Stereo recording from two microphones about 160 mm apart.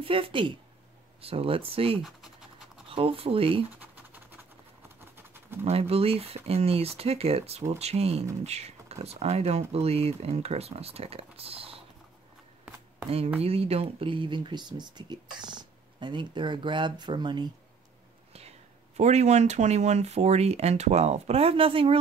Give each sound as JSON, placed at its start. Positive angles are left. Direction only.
{"t": 0.0, "sound": "speech", "side_deg": -35}
{"t": 3.7, "sound": "scratch", "side_deg": -10}
{"t": 5.6, "sound": "speech", "side_deg": -40}
{"t": 13.4, "sound": "speech", "side_deg": -40}
{"t": 18.9, "sound": "speech", "side_deg": -45}